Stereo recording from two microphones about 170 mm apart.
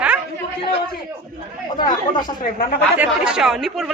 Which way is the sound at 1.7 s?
25° left (ahead or behind).